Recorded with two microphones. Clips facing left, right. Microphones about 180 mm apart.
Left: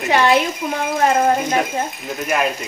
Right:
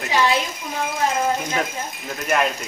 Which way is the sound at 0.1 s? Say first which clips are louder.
Left 5 dB; 60° left (ahead or behind).